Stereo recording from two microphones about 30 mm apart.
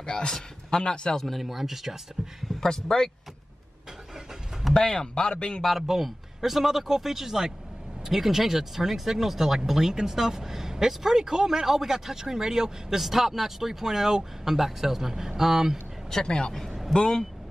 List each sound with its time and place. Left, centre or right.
0.0 s a man's voice: left
1.2 s speech: centre
2.6 s speech: left
4.7 s speech: left
5.7 s speech: centre
13.0 s speech: centre
16.3 s speech: left